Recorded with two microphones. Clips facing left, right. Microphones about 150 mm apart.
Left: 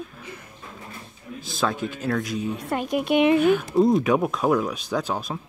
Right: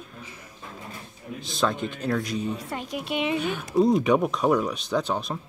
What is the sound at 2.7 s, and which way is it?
Speech, 60° left (ahead or behind).